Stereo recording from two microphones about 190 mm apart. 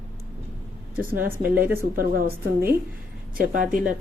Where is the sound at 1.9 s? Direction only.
50° right (ahead or behind).